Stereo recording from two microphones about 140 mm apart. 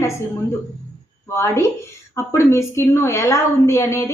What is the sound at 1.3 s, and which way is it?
A woman's voice, 20° left (ahead or behind).